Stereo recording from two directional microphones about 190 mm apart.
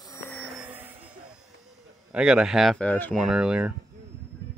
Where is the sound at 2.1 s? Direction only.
5° right (ahead or behind).